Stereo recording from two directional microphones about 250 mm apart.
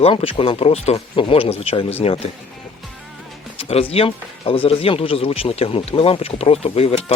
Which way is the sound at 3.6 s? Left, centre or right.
Left.